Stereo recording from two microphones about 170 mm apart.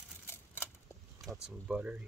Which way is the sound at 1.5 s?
5° right (ahead or behind).